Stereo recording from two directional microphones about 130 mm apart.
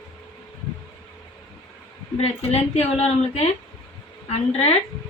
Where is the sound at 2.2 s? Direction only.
55° left (ahead or behind).